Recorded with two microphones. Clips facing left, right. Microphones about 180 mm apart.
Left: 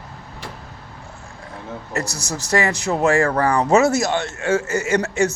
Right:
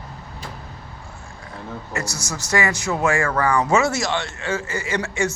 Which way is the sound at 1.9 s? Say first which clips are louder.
Left 4 dB; 35° left (ahead or behind).